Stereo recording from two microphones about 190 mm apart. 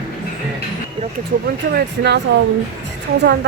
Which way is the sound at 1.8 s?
60° right (ahead or behind).